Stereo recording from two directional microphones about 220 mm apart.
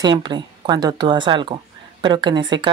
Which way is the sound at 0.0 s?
20° right (ahead or behind).